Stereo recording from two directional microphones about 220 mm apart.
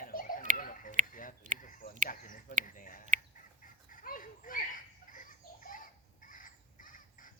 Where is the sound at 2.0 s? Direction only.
40° left (ahead or behind).